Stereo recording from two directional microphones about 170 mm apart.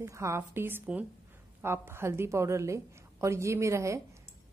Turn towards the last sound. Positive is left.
turn(degrees=-15)  # may be behind; listen again after turning